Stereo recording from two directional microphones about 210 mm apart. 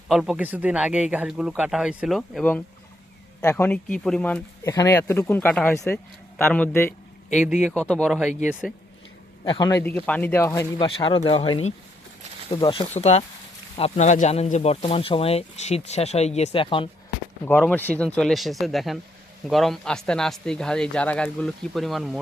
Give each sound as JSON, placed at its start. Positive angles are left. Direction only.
{"t": 0.1, "sound": "speech", "side_deg": 0}
{"t": 7.3, "sound": "speech", "side_deg": -5}
{"t": 9.4, "sound": "speech", "side_deg": 20}
{"t": 10.8, "sound": "speech", "side_deg": 25}
{"t": 17.4, "sound": "speech", "side_deg": 5}